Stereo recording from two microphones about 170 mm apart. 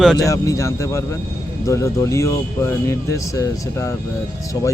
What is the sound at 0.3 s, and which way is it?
Speech, 20° left (ahead or behind).